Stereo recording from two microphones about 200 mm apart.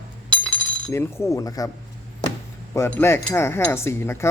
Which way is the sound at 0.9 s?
10° left (ahead or behind).